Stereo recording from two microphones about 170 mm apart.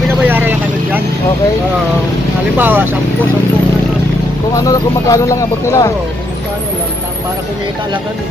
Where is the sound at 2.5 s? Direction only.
10° right (ahead or behind).